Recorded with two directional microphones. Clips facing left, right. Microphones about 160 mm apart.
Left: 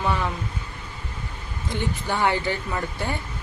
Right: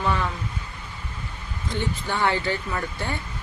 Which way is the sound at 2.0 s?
15° left (ahead or behind).